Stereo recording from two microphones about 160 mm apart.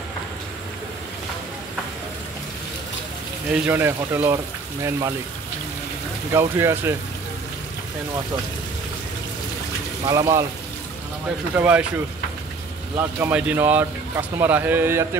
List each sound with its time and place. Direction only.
3.5 s speech: 10° right (ahead or behind)
6.3 s speech: 15° right (ahead or behind)
10.0 s speech: 20° right (ahead or behind)
11.5 s speech: 10° right (ahead or behind)
12.9 s speech: 10° right (ahead or behind)